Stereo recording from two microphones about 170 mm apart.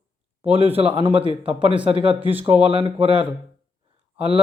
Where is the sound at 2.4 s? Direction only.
35° right (ahead or behind).